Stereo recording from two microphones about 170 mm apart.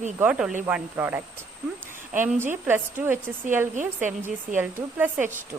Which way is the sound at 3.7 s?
50° right (ahead or behind).